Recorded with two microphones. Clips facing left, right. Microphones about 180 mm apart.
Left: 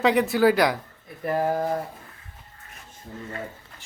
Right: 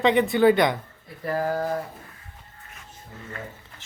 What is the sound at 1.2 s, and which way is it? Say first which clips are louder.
Speech: left 1 dB; 20° left (ahead or behind).